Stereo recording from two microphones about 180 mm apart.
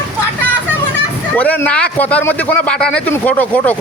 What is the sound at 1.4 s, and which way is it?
A man's voice, 10° left (ahead or behind).